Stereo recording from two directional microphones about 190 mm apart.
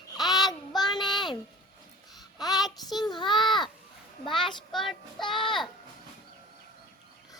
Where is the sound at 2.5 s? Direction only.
Centre (ahead or behind).